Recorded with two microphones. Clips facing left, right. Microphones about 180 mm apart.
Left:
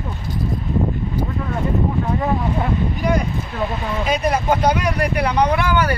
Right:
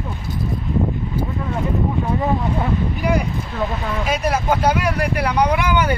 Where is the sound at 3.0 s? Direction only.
10° right (ahead or behind).